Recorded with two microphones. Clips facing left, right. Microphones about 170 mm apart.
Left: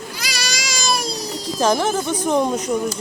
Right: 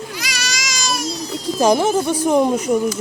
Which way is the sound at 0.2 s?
35° left (ahead or behind).